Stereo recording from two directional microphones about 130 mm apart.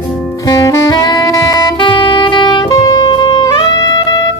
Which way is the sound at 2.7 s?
30° left (ahead or behind).